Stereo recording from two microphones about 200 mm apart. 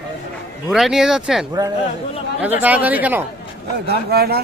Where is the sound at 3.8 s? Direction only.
50° right (ahead or behind).